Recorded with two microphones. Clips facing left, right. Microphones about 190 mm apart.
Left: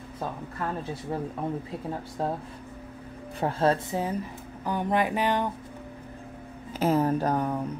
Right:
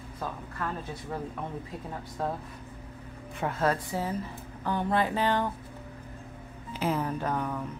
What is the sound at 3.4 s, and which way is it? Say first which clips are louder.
Speech: left 4 dB; 30° left (ahead or behind).